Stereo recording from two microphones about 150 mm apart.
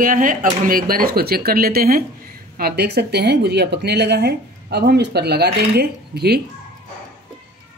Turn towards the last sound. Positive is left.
turn(degrees=-90)